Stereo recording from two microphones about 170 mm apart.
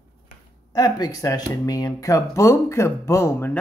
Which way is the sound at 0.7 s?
25° left (ahead or behind).